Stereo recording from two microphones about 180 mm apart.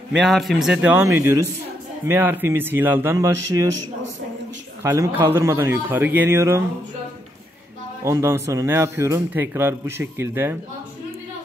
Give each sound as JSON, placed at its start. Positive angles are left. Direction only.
{"t": 0.2, "sound": "speech", "side_deg": 0}
{"t": 4.8, "sound": "speech", "side_deg": -15}
{"t": 8.0, "sound": "speech", "side_deg": -15}